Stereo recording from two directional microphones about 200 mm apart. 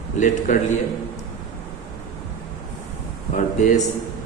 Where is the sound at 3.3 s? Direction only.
40° left (ahead or behind).